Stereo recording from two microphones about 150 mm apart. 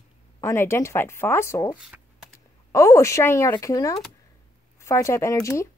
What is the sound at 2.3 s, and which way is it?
Speech, 20° left (ahead or behind).